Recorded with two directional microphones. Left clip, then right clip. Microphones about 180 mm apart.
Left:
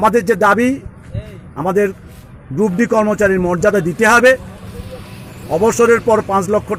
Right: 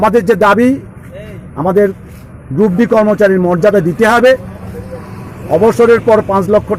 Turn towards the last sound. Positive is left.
turn(degrees=20)  # may be behind; listen again after turning